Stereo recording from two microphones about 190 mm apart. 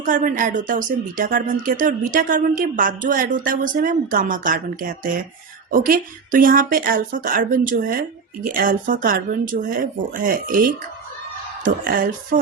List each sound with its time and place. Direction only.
0.0 s speech: 45° right (ahead or behind)